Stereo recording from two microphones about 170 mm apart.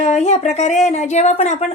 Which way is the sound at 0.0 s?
45° left (ahead or behind).